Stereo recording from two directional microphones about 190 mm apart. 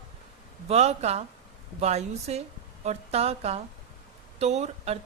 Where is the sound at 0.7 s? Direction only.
35° right (ahead or behind).